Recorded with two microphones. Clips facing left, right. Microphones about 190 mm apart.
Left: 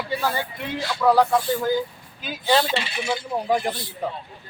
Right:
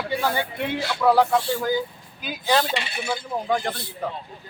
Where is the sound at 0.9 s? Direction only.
Centre (ahead or behind).